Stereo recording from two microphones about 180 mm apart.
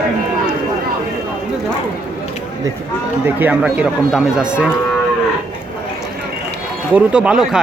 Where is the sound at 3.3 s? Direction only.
10° right (ahead or behind).